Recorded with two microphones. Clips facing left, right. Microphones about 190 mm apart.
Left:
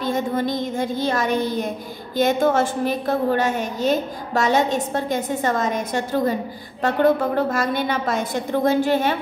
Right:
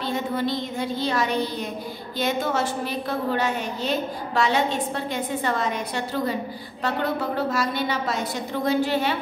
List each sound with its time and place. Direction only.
0.0 s a woman's voice: 45° left (ahead or behind)
7.3 s a woman's voice: 50° left (ahead or behind)